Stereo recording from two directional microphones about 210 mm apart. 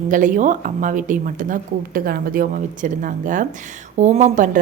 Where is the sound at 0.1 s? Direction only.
40° right (ahead or behind).